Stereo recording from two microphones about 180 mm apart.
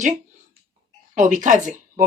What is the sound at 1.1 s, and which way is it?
Speech, 45° right (ahead or behind).